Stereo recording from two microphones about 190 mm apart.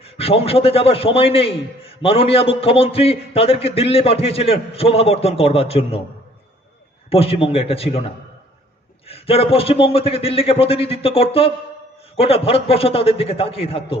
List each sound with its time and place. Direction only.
0.0 s a man's voice: 30° left (ahead or behind)
7.1 s a man's voice: 30° left (ahead or behind)
9.0 s a man's voice: 30° left (ahead or behind)